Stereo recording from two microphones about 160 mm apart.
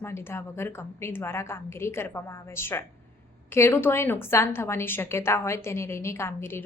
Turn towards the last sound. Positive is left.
turn(degrees=15)  # may be behind; listen again after turning